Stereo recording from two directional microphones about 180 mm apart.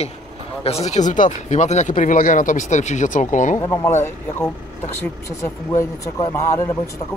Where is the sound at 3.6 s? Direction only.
15° left (ahead or behind).